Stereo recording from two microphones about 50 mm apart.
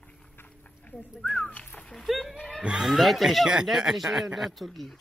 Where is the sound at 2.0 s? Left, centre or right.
Centre.